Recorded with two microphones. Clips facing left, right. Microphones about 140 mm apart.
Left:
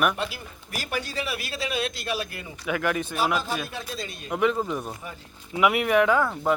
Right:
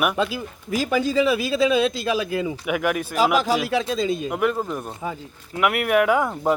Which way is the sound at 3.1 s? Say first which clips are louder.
Right 7 dB; 90° right.